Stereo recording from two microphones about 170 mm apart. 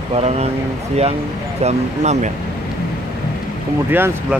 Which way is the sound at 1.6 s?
40° right (ahead or behind).